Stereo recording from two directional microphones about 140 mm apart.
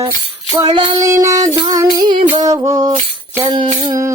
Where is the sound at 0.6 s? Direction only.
35° right (ahead or behind).